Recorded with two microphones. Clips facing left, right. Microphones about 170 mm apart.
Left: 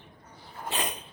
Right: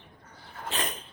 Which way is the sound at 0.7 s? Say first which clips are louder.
Left 1 dB; 15° left (ahead or behind).